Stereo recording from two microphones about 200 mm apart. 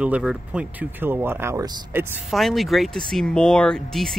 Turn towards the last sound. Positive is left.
turn(degrees=0)  # may be behind; listen again after turning